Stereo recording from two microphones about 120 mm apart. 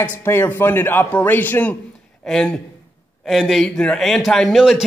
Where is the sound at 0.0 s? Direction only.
20° left (ahead or behind).